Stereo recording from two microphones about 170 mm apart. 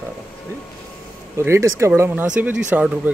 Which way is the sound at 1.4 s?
15° right (ahead or behind).